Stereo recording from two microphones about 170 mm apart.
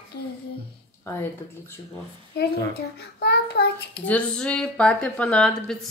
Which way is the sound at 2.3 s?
70° left (ahead or behind).